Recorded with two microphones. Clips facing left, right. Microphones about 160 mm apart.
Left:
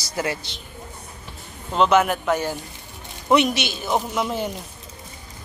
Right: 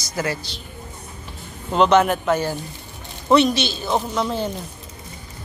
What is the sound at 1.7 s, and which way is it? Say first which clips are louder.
Speech: right 2 dB; 5° left (ahead or behind).